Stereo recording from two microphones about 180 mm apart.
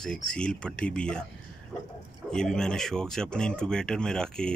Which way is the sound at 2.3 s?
5° left (ahead or behind).